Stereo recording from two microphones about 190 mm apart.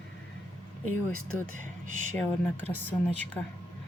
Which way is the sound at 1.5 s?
45° right (ahead or behind).